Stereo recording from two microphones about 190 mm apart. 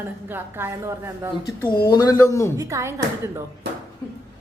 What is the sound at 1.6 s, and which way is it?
Speech, 50° left (ahead or behind).